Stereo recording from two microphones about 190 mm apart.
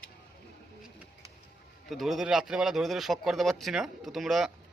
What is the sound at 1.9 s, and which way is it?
Speech, centre (ahead or behind).